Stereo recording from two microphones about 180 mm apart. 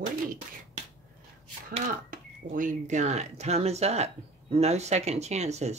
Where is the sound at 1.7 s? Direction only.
45° right (ahead or behind).